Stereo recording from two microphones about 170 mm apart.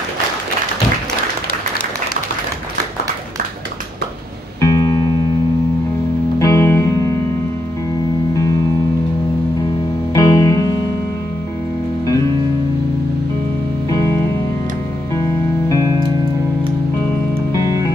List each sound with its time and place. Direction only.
4.6 s music: 20° left (ahead or behind)
6.4 s music: 15° left (ahead or behind)
10.1 s music: 20° left (ahead or behind)
13.8 s music: 20° left (ahead or behind)
15.1 s music: 20° left (ahead or behind)
17.5 s music: 20° left (ahead or behind)